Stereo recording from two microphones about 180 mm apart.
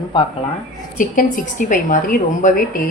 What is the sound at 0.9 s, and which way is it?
A woman's voice, 50° left (ahead or behind).